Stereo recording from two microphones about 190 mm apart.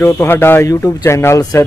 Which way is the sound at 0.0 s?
10° left (ahead or behind).